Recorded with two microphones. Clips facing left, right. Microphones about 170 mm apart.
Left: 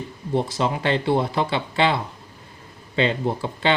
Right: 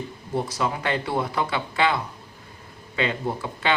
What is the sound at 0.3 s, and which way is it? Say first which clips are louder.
Speech: left 3 dB; 25° left (ahead or behind).